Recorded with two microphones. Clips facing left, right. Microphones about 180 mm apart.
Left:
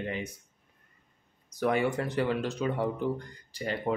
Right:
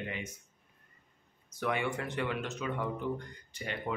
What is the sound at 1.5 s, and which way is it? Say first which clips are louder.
Speech: left 6 dB; 40° left (ahead or behind).